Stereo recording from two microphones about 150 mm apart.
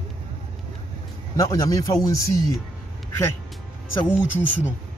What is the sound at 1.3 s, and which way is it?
Speech, 20° left (ahead or behind).